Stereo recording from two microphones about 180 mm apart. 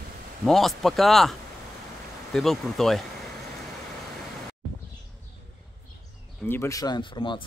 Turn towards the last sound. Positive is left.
turn(degrees=25)  # may be behind; listen again after turning